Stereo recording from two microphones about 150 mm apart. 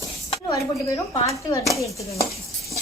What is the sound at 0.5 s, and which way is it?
Speech, 20° left (ahead or behind).